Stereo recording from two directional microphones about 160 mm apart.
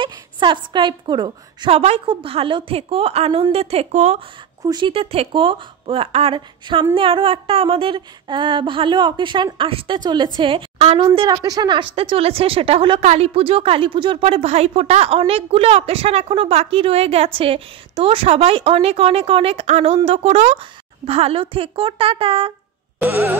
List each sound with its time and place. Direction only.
0.0 s a woman's voice: 30° right (ahead or behind)
4.6 s a woman's voice: 30° right (ahead or behind)
22.9 s music: 10° right (ahead or behind)